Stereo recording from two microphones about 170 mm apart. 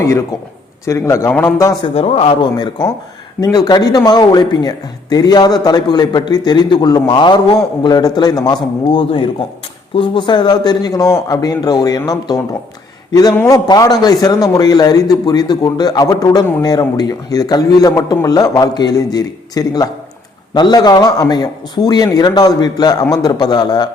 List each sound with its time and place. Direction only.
0.0 s a man's voice: 15° left (ahead or behind)
1.8 s a man's voice: 35° left (ahead or behind)